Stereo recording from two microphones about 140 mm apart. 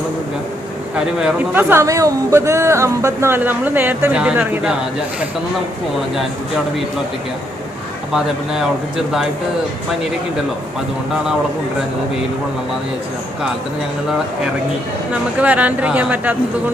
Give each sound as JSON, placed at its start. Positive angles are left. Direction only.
{"t": 0.9, "sound": "speech", "side_deg": -5}
{"t": 1.7, "sound": "speech", "side_deg": -20}
{"t": 15.4, "sound": "speech", "side_deg": -10}